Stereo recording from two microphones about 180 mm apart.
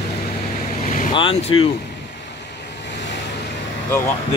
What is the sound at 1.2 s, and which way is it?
Speech, 30° left (ahead or behind).